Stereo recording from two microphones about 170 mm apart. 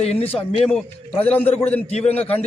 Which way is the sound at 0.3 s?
35° left (ahead or behind).